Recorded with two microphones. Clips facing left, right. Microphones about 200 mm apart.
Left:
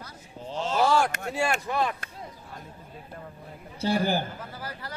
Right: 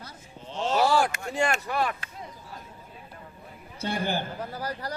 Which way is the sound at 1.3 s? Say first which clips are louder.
Right 1 dB; 10° left (ahead or behind).